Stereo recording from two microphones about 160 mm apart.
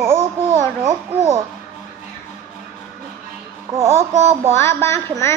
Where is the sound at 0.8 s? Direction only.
15° right (ahead or behind).